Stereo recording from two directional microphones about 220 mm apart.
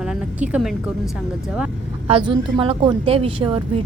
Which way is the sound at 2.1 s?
25° right (ahead or behind).